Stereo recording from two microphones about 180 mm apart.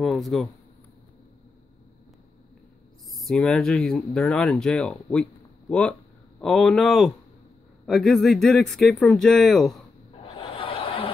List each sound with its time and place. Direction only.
0.0 s speech: centre (ahead or behind)
3.1 s speech: centre (ahead or behind)
10.3 s a sound: 30° left (ahead or behind)